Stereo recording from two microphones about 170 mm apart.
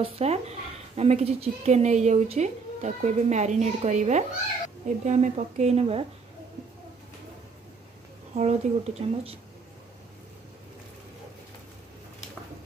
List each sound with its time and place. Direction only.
0.0 s a woman's voice: 40° right (ahead or behind)
8.4 s a woman's voice: 40° right (ahead or behind)